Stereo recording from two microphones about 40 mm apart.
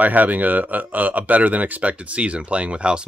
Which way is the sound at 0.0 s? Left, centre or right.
Right.